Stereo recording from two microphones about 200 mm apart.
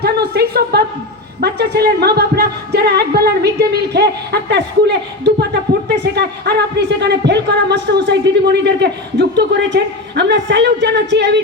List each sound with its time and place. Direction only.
0.0 s a woman's voice: 55° right (ahead or behind)